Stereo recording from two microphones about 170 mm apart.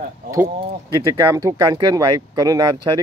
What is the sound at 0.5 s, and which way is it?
Speech, 25° right (ahead or behind).